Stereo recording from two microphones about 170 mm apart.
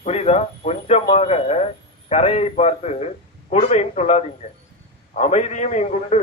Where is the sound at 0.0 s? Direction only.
40° left (ahead or behind).